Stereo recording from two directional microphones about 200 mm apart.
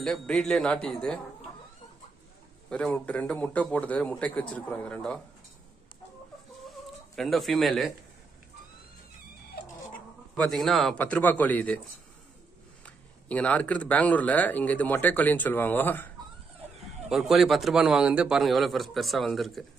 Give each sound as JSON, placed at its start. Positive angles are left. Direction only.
{"t": 0.0, "sound": "a man's voice", "side_deg": 5}
{"t": 2.7, "sound": "speech", "side_deg": 5}
{"t": 7.2, "sound": "a man's voice", "side_deg": 0}
{"t": 9.5, "sound": "cat", "side_deg": 50}
{"t": 10.3, "sound": "speech", "side_deg": 5}
{"t": 12.8, "sound": "speech", "side_deg": 5}
{"t": 17.1, "sound": "a man's voice", "side_deg": 0}